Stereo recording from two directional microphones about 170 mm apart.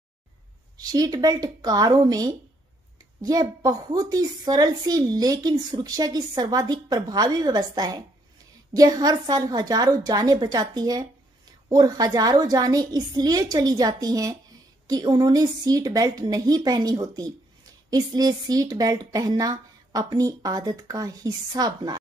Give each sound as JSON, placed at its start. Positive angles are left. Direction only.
{"t": 0.7, "sound": "a woman's voice", "side_deg": -20}